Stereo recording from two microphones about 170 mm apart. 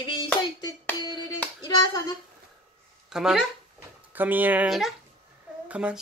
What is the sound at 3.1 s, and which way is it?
Speech, centre (ahead or behind).